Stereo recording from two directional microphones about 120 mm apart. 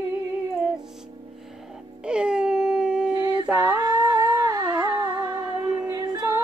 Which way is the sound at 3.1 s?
35° right (ahead or behind).